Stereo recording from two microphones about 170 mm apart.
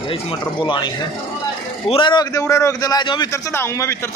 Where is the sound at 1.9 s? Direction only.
30° left (ahead or behind).